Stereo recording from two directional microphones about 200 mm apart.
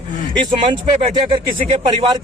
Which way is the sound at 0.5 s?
25° right (ahead or behind).